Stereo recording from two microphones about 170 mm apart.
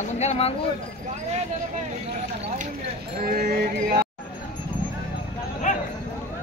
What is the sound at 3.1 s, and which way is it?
Music, 65° right (ahead or behind).